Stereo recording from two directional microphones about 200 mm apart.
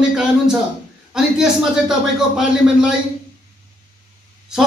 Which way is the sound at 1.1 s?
5° right (ahead or behind).